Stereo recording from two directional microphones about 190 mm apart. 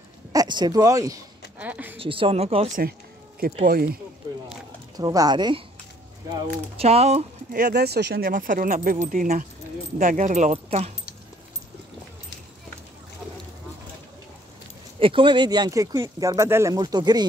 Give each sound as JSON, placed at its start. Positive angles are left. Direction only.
{"t": 0.3, "sound": "speech", "side_deg": -20}
{"t": 2.0, "sound": "speech", "side_deg": -30}
{"t": 3.3, "sound": "speech", "side_deg": -50}
{"t": 4.5, "sound": "a sound", "side_deg": -20}
{"t": 6.8, "sound": "speech", "side_deg": -35}
{"t": 7.5, "sound": "speech", "side_deg": -55}
{"t": 15.0, "sound": "speech", "side_deg": -25}